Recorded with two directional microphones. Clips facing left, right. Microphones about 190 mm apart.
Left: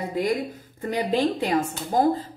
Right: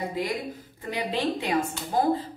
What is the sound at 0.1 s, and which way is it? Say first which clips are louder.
Speech: left 5 dB; 45° left (ahead or behind).